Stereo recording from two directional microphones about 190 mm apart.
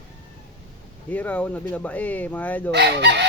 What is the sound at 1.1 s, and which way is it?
Speech, 10° left (ahead or behind).